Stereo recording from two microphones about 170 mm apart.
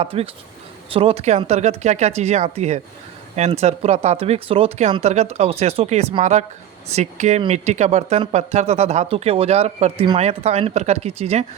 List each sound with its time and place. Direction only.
0.0 s speech: 35° right (ahead or behind)